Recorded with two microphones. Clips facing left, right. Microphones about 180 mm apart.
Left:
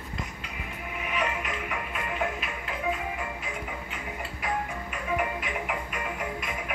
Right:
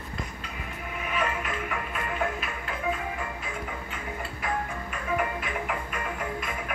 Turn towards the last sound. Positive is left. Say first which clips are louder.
# right 1 dB
turn(degrees=20)  # may be behind; listen again after turning